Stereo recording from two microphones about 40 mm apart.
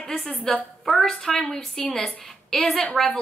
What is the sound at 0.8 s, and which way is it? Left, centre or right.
Speech, centre.